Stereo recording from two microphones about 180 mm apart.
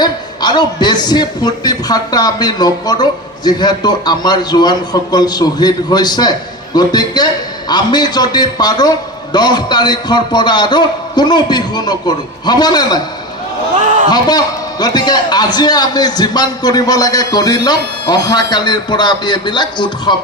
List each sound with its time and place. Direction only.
0.0 s a man's voice: 25° left (ahead or behind)
14.1 s a man's voice: 20° left (ahead or behind)